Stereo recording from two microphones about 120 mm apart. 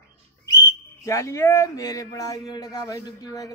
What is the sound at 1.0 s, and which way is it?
Speech, 25° left (ahead or behind).